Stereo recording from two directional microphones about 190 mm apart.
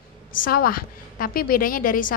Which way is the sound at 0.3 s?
50° left (ahead or behind).